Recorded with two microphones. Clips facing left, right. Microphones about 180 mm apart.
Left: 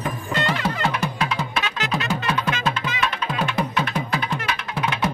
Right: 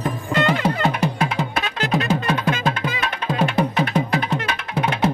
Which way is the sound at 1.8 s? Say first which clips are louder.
Right 8 dB; 35° right (ahead or behind).